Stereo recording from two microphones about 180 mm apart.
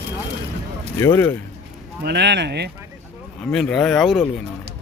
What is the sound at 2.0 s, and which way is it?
Speech, 70° right (ahead or behind).